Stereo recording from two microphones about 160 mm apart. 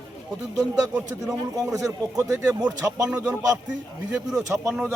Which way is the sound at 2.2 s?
20° right (ahead or behind).